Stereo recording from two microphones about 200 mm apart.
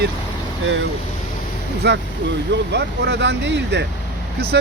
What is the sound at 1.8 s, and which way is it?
Speech, 60° right (ahead or behind).